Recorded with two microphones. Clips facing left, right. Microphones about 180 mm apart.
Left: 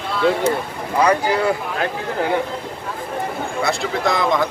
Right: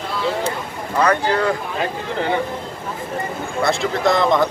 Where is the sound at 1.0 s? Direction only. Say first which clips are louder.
Left 1 dB; 10° left (ahead or behind).